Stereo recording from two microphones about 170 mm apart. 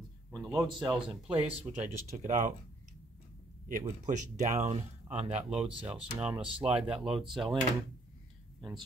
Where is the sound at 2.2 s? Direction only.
50° right (ahead or behind).